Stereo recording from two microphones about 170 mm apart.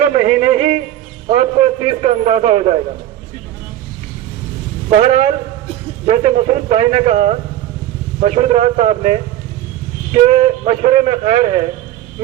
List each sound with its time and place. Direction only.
0.1 s a man's voice: 40° right (ahead or behind)
4.9 s a man's voice: 40° right (ahead or behind)
10.2 s a man's voice: 40° right (ahead or behind)